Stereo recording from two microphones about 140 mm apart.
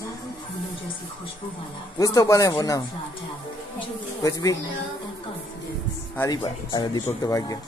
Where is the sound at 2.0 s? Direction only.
25° left (ahead or behind).